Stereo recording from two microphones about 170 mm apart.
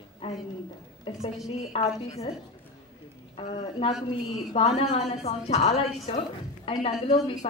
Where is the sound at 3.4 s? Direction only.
35° left (ahead or behind).